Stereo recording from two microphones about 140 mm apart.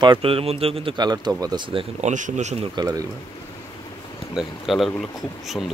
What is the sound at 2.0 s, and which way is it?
Speech, 60° right (ahead or behind).